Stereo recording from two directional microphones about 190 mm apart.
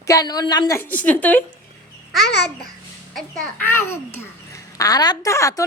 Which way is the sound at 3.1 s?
10° left (ahead or behind).